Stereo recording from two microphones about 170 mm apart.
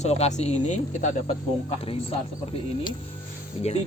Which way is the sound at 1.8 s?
35° left (ahead or behind).